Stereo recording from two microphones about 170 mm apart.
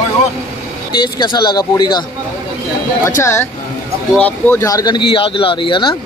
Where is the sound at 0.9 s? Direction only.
25° left (ahead or behind).